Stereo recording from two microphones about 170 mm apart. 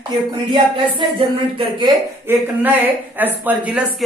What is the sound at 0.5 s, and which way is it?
Speech, 30° right (ahead or behind).